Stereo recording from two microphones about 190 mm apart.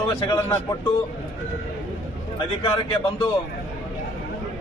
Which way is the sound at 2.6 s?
25° left (ahead or behind).